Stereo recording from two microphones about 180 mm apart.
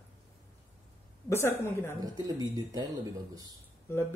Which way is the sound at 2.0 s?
20° right (ahead or behind).